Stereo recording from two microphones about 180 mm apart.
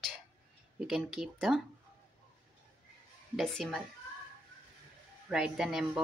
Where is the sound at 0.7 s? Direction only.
5° right (ahead or behind).